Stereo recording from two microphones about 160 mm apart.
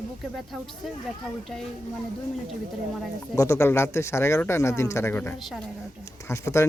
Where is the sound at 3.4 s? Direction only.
20° left (ahead or behind).